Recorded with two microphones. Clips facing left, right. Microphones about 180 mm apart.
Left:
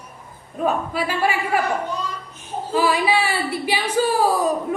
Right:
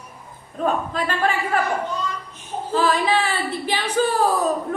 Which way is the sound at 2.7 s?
10° left (ahead or behind).